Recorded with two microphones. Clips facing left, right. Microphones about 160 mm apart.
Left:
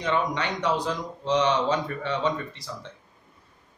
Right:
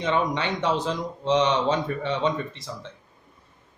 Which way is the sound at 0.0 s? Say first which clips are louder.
Right 2 dB; 20° right (ahead or behind).